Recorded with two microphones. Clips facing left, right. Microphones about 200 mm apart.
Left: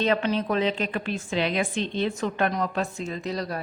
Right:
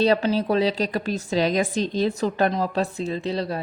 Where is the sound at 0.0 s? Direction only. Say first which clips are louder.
Right 4 dB; 35° right (ahead or behind).